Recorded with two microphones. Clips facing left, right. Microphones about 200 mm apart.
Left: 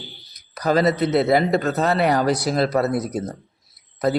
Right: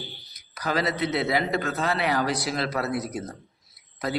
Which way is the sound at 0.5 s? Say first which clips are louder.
Left 8 dB; 40° left (ahead or behind).